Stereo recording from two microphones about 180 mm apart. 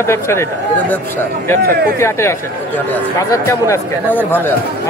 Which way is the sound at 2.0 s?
15° left (ahead or behind).